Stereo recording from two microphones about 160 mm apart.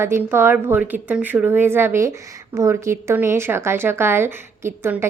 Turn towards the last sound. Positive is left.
turn(degrees=-15)  # may be behind; listen again after turning